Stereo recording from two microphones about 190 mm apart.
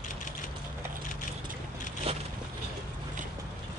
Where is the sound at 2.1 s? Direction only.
30° right (ahead or behind).